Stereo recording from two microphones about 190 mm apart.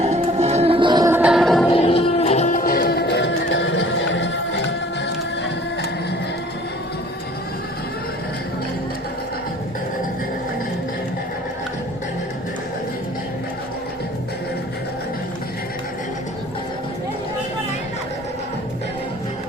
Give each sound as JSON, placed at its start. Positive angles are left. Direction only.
{"t": 0.0, "sound": "music", "side_deg": -35}
{"t": 1.1, "sound": "music", "side_deg": -5}
{"t": 1.7, "sound": "music", "side_deg": 30}